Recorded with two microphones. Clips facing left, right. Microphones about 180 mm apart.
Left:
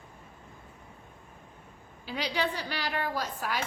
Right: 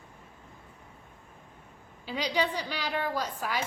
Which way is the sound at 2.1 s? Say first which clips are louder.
Right 2 dB; 15° right (ahead or behind).